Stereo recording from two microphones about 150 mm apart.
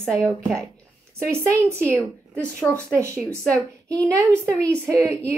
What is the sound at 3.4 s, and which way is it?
A woman's voice, 5° left (ahead or behind).